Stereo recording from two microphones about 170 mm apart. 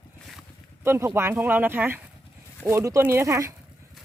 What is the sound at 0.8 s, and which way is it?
Speech, 15° right (ahead or behind).